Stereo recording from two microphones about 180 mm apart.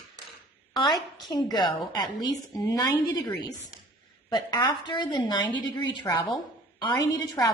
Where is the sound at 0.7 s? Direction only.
25° left (ahead or behind).